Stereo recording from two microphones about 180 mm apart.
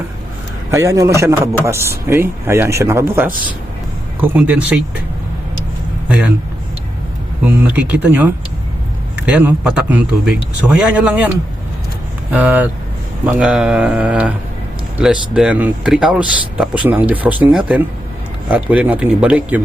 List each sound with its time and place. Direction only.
0.7 s speech: 15° right (ahead or behind)
6.1 s speech: 10° right (ahead or behind)
7.4 s speech: 10° right (ahead or behind)
12.3 s speech: 10° right (ahead or behind)